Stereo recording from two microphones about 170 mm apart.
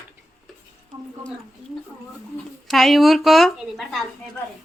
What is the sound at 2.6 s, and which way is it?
A woman's voice, centre (ahead or behind).